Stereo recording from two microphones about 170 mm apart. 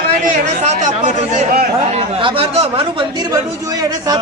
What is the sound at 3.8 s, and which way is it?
Speech, 25° right (ahead or behind).